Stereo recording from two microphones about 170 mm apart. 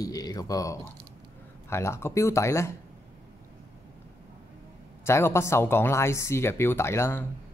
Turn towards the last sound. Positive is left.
turn(degrees=15)  # may be behind; listen again after turning